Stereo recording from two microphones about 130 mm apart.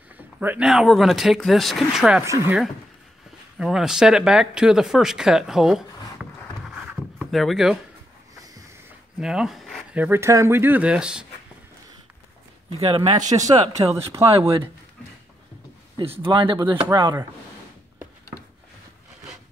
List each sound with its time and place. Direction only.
0.4 s speech: 15° right (ahead or behind)
0.7 s speech: centre (ahead or behind)
2.2 s speech: 20° right (ahead or behind)
3.5 s speech: 5° right (ahead or behind)
9.2 s speech: 5° right (ahead or behind)
9.9 s speech: 15° right (ahead or behind)
12.7 s speech: 50° right (ahead or behind)
13.3 s speech: 30° right (ahead or behind)
14.3 s speech: 45° right (ahead or behind)
16.0 s speech: 45° right (ahead or behind)